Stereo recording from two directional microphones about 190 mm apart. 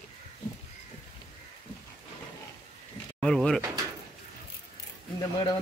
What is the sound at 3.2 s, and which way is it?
Speech, centre (ahead or behind).